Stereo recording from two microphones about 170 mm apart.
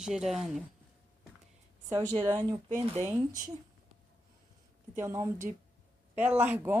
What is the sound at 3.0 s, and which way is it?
Speech, 20° right (ahead or behind).